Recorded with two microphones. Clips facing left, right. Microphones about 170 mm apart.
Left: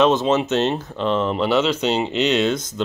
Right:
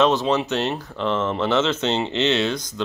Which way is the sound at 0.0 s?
20° left (ahead or behind).